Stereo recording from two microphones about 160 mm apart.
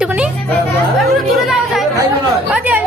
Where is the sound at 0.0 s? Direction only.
5° right (ahead or behind).